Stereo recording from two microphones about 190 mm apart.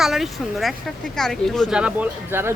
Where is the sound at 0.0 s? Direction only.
Centre (ahead or behind).